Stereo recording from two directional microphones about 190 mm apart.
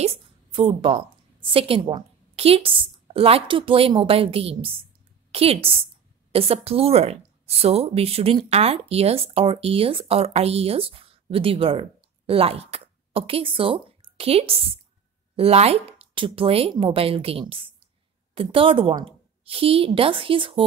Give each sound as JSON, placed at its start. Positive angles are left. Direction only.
{"t": 0.0, "sound": "a woman's voice", "side_deg": -30}